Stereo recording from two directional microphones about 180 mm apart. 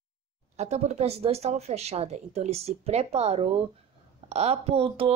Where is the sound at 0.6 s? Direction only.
40° right (ahead or behind).